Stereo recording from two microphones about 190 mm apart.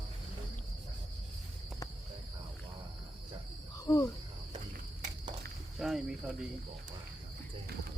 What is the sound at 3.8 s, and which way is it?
Cricket, 15° left (ahead or behind).